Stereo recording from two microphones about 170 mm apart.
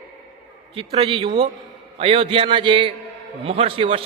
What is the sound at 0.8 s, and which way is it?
A man's voice, 35° right (ahead or behind).